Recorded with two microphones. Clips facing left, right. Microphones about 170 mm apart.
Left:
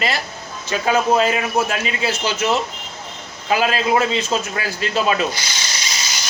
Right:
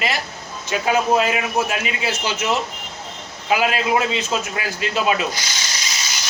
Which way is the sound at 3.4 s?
15° right (ahead or behind).